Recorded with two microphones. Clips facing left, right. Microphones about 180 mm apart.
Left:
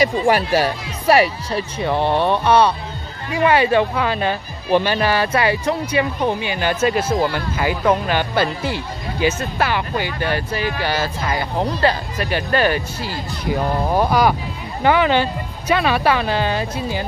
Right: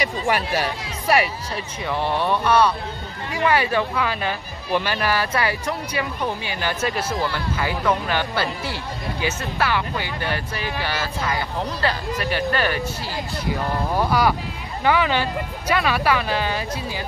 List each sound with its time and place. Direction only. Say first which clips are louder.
0.0 s speech: left 6 dB; 35° left (ahead or behind); by 10.0 s 20° left (ahead or behind)
12.3 s speech: left 5 dB; 15° left (ahead or behind)